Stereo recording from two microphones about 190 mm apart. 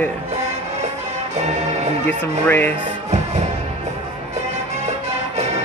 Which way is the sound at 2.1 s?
10° left (ahead or behind).